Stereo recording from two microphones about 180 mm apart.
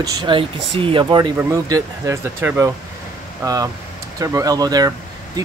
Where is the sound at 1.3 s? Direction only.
15° right (ahead or behind).